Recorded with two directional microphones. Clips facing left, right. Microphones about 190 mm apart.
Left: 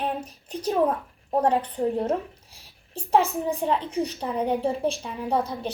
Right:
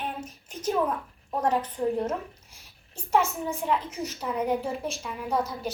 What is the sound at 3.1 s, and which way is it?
A child's voice, 35° left (ahead or behind).